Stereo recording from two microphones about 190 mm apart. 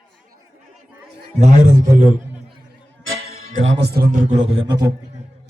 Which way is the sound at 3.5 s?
80° right.